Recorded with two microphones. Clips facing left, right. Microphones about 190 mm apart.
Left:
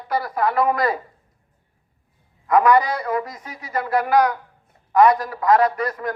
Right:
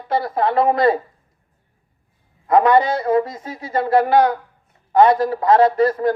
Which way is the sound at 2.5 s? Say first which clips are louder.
Right 2 dB; 25° right (ahead or behind).